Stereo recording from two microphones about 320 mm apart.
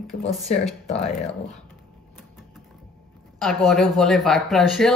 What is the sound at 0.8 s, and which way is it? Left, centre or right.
Speech, centre.